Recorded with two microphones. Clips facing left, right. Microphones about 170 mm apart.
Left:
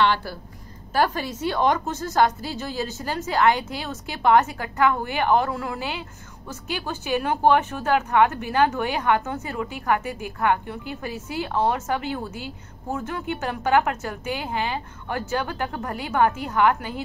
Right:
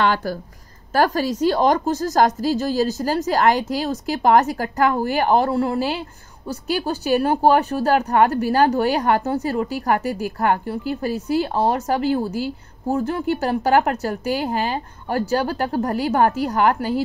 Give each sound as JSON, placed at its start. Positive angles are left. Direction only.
{"t": 0.0, "sound": "speech", "side_deg": -45}